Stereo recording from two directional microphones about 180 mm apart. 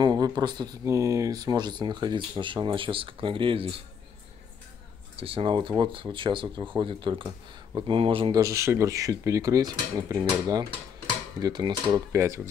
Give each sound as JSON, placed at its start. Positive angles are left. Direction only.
{"t": 0.0, "sound": "speech", "side_deg": -20}
{"t": 5.1, "sound": "speech", "side_deg": -30}
{"t": 8.4, "sound": "speech", "side_deg": -15}